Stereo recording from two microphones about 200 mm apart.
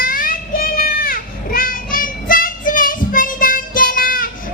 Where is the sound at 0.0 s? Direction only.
45° left (ahead or behind).